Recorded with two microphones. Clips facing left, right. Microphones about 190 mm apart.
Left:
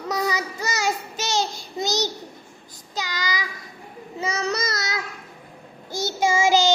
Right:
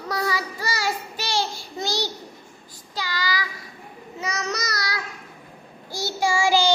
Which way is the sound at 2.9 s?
20° left (ahead or behind).